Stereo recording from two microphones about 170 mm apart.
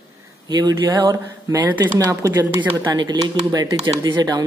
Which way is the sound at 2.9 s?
25° right (ahead or behind).